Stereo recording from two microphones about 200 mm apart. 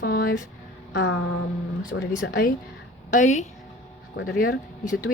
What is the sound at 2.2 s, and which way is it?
Speech, 60° left (ahead or behind).